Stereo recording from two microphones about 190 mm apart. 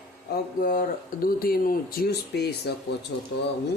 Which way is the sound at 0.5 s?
45° left (ahead or behind).